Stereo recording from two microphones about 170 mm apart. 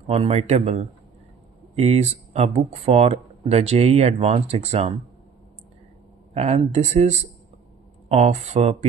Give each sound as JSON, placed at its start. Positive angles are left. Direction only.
{"t": 0.0, "sound": "speech", "side_deg": -40}
{"t": 6.3, "sound": "speech", "side_deg": -40}